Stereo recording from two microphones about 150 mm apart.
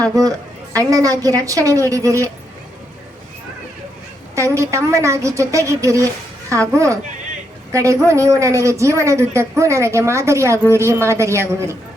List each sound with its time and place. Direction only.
0.0 s speech: 25° right (ahead or behind)
4.4 s speech: 20° right (ahead or behind)